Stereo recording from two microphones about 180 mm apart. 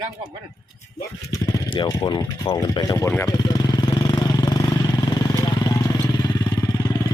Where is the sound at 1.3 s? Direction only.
25° left (ahead or behind).